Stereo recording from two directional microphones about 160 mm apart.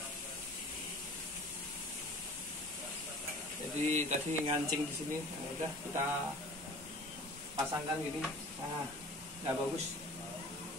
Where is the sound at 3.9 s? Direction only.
45° right (ahead or behind).